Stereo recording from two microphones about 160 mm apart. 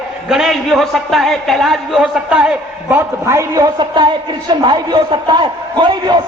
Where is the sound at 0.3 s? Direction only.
Centre (ahead or behind).